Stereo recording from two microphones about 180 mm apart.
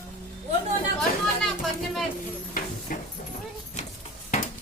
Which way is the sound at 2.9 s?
50° left (ahead or behind).